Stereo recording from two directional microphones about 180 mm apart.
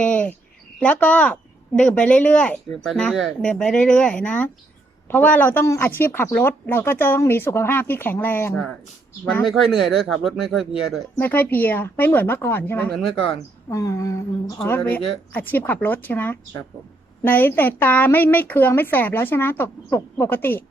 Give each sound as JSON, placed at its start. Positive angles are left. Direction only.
{"t": 0.0, "sound": "a sound", "side_deg": 5}
{"t": 0.8, "sound": "speech", "side_deg": 10}
{"t": 9.5, "sound": "speech", "side_deg": 0}
{"t": 11.2, "sound": "speech", "side_deg": 10}
{"t": 13.7, "sound": "speech", "side_deg": 15}